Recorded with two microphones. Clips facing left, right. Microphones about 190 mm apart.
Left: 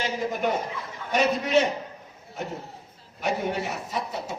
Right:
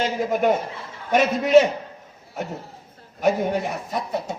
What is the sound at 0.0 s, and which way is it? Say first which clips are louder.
A man's voice: right 6 dB; 50° right (ahead or behind).